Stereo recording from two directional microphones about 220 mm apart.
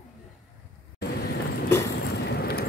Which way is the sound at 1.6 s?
10° left (ahead or behind).